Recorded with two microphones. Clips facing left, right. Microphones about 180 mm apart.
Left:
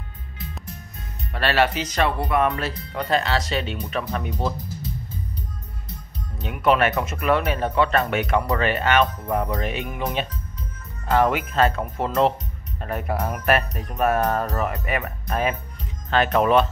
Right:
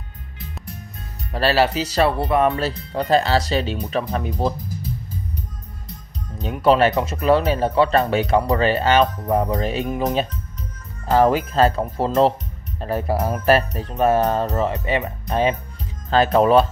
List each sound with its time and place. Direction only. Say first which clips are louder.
1.3 s speech: right 3 dB; 35° right (ahead or behind)
6.4 s speech: right 4 dB; 35° right (ahead or behind)
11.1 s speech: right 4 dB; 35° right (ahead or behind)